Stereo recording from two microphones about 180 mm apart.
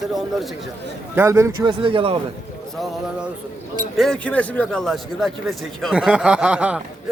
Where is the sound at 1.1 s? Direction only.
15° right (ahead or behind).